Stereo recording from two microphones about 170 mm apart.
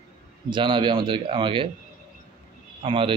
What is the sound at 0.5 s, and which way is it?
Speech, 30° right (ahead or behind).